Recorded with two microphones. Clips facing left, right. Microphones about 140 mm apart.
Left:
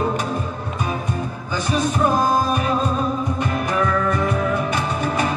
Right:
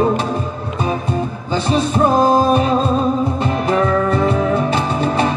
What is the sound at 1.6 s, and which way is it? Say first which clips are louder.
Music: right 4 dB; 30° right (ahead or behind).